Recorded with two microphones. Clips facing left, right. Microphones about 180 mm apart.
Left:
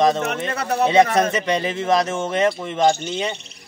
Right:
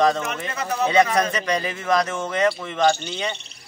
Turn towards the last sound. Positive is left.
turn(degrees=25)  # may be behind; listen again after turning